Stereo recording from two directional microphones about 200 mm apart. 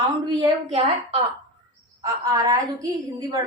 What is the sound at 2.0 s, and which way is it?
A woman's voice, 15° right (ahead or behind).